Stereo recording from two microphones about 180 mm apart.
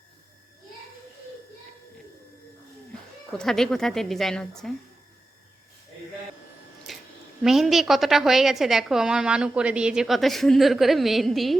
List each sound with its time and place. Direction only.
3.3 s a woman's voice: centre (ahead or behind)
6.9 s a sound: centre (ahead or behind)
7.4 s a woman's voice: centre (ahead or behind)